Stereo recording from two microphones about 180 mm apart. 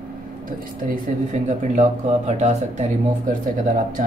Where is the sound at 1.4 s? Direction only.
40° right (ahead or behind).